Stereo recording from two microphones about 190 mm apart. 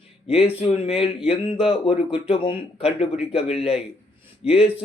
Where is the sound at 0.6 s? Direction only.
30° left (ahead or behind).